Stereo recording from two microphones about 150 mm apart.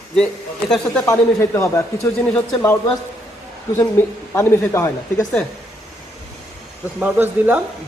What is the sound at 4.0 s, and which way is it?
Speech, 15° left (ahead or behind).